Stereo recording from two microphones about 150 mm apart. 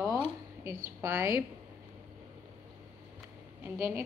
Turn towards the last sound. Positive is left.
turn(degrees=-15)  # may be behind; listen again after turning